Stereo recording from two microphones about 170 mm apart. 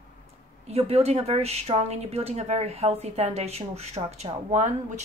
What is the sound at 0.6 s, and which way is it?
A woman's voice, 40° right (ahead or behind).